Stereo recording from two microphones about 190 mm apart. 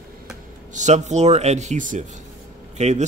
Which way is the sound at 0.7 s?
40° right (ahead or behind).